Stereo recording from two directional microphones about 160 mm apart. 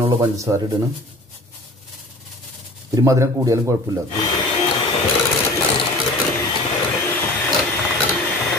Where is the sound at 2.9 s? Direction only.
20° right (ahead or behind).